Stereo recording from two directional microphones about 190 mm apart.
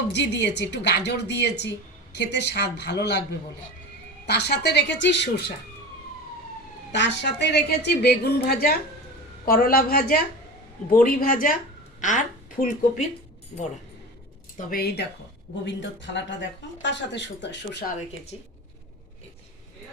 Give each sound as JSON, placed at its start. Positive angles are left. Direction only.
{"t": 0.1, "sound": "a woman's voice", "side_deg": 65}
{"t": 4.3, "sound": "a woman's voice", "side_deg": 60}
{"t": 6.9, "sound": "a woman's voice", "side_deg": 65}
{"t": 14.7, "sound": "a woman's voice", "side_deg": 55}
{"t": 15.6, "sound": "speech", "side_deg": 70}